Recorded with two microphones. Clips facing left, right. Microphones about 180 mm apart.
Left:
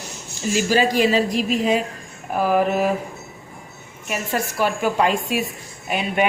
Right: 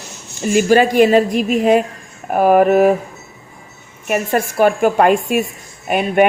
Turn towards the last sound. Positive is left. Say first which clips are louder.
# right 7 dB
turn(degrees=-55)  # may be behind; listen again after turning